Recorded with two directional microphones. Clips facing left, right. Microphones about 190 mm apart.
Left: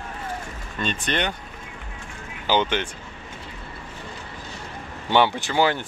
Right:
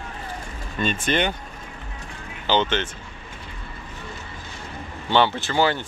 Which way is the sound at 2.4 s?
10° left (ahead or behind).